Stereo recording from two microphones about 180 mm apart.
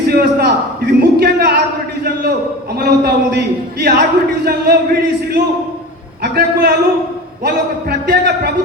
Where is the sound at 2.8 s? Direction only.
60° right (ahead or behind).